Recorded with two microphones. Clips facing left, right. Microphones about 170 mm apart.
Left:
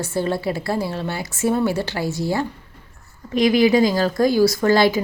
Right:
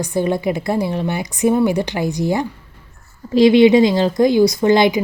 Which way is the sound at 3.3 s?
25° right (ahead or behind).